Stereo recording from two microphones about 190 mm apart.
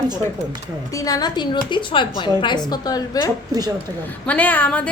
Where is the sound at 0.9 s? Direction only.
20° left (ahead or behind).